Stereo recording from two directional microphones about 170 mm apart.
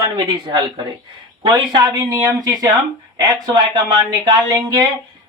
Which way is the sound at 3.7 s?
25° right (ahead or behind).